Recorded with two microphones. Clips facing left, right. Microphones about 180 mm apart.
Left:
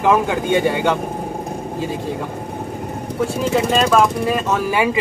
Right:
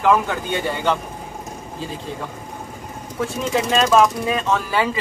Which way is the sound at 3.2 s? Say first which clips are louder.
Left 3 dB; centre (ahead or behind).